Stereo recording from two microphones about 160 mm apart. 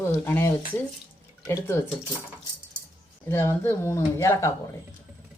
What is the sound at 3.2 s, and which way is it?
Speech, 15° left (ahead or behind).